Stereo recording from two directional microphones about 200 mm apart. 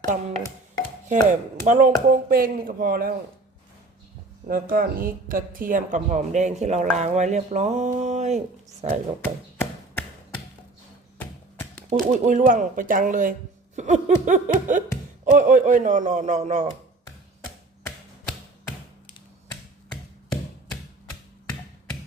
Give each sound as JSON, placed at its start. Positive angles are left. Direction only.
{"t": 0.0, "sound": "music", "side_deg": -35}
{"t": 1.0, "sound": "a woman's voice", "side_deg": -40}
{"t": 4.4, "sound": "a woman's voice", "side_deg": -45}
{"t": 11.9, "sound": "a woman's voice", "side_deg": -35}